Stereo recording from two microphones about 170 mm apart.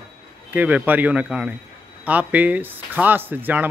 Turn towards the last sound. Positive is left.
turn(degrees=-10)  # may be behind; listen again after turning